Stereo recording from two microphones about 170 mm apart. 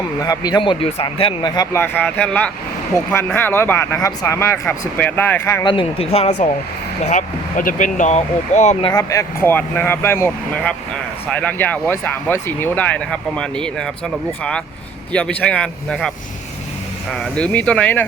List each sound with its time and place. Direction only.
0.2 s speech: 25° left (ahead or behind)
1.8 s speech: 10° left (ahead or behind)
5.6 s speech: 30° left (ahead or behind)
8.8 s speech: 20° left (ahead or behind); by 13.9 s 5° left (ahead or behind)
15.1 s speech: 10° left (ahead or behind)